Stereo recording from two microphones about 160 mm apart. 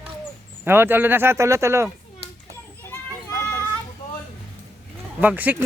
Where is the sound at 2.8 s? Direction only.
15° left (ahead or behind).